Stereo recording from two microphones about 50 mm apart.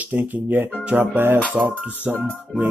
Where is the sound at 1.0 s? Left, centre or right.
Right.